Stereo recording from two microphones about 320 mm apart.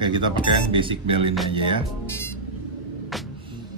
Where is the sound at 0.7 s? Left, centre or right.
Centre.